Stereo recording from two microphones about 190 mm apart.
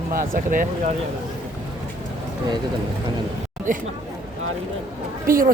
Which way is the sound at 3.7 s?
45° right (ahead or behind).